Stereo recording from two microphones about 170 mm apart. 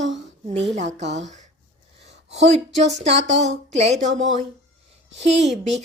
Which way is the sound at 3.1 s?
90° right.